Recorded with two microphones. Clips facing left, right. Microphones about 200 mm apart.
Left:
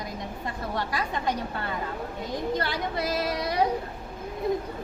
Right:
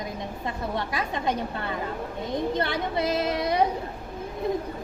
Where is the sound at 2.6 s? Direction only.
25° right (ahead or behind).